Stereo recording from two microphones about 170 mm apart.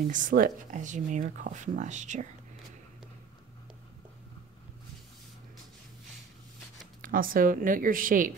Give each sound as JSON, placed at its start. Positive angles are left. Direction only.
{"t": 0.1, "sound": "speech", "side_deg": -55}
{"t": 7.0, "sound": "speech", "side_deg": -55}